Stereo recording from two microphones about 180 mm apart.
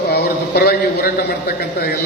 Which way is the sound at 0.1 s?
60° left (ahead or behind).